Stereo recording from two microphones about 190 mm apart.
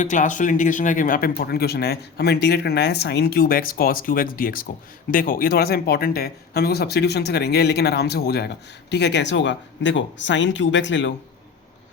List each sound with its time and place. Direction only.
0.0 s speech: 40° left (ahead or behind); by 11.1 s 75° left (ahead or behind)